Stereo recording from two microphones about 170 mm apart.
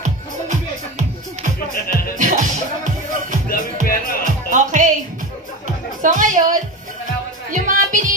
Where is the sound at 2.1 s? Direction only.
50° right (ahead or behind).